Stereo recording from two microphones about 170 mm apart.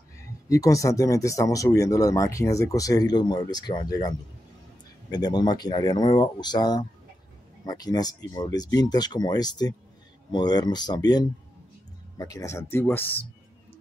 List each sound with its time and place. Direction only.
0.5 s speech: 20° left (ahead or behind)
5.1 s speech: 25° left (ahead or behind)